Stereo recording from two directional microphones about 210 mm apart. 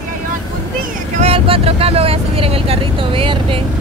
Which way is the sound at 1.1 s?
25° right (ahead or behind).